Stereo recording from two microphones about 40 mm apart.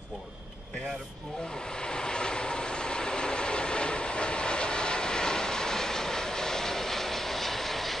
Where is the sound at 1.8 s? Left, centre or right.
Left.